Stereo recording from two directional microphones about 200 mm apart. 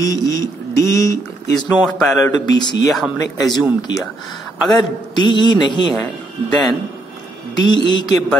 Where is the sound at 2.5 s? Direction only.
20° left (ahead or behind).